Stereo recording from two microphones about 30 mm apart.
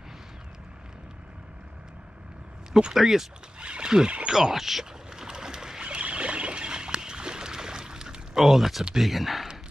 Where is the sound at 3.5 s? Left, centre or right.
Right.